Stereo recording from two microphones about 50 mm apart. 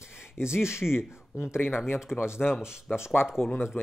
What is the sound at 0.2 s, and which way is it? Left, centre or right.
Speech, left.